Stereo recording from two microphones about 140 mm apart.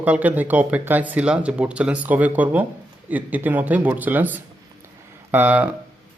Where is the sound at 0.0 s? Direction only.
10° right (ahead or behind).